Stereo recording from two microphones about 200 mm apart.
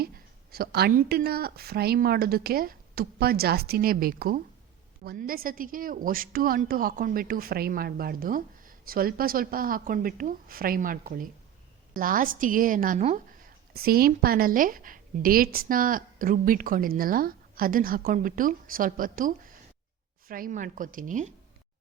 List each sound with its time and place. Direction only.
0.5 s a woman's voice: 50° right (ahead or behind)